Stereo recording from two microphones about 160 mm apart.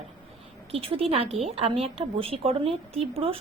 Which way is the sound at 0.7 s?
35° right (ahead or behind).